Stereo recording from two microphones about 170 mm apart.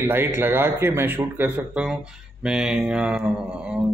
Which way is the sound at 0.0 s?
10° right (ahead or behind).